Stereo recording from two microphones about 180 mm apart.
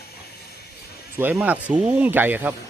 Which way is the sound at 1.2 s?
10° right (ahead or behind).